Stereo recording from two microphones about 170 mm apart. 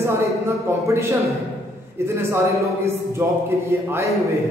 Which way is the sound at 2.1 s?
15° right (ahead or behind).